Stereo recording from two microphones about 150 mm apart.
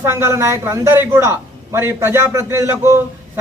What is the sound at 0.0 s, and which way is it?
A man's voice, 15° right (ahead or behind).